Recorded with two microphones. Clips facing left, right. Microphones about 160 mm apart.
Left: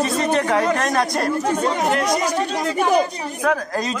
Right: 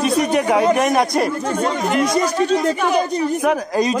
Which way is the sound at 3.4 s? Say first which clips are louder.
Left 1 dB; 15° right (ahead or behind).